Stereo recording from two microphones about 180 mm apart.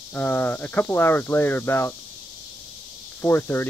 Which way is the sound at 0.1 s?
10° left (ahead or behind).